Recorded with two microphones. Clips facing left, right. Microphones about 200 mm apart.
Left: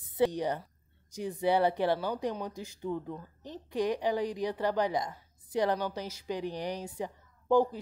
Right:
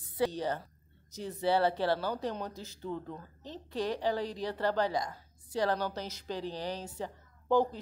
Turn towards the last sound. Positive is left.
turn(degrees=10)  # may be behind; listen again after turning